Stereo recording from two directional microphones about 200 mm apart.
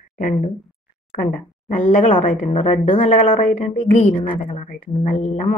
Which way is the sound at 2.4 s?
30° left (ahead or behind).